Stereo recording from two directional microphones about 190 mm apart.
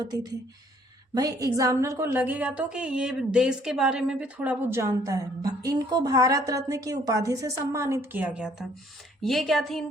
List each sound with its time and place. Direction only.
0.0 s a woman's voice: 20° right (ahead or behind); by 9.8 s centre (ahead or behind)